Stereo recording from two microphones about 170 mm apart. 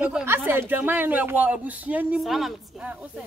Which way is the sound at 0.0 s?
10° right (ahead or behind).